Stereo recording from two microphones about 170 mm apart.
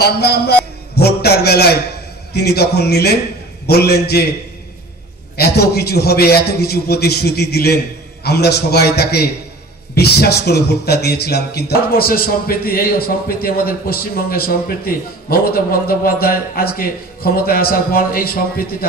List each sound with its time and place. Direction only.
0.0 s a man's voice: 70° left (ahead or behind)
5.4 s a man's voice: 70° left (ahead or behind)